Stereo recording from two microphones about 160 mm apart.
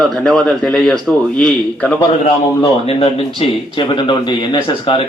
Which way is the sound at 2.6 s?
35° left (ahead or behind).